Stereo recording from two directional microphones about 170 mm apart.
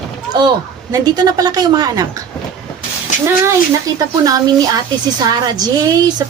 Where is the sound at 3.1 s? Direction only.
50° left (ahead or behind).